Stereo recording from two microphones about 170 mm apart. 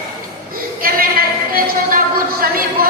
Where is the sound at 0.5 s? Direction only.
60° right (ahead or behind).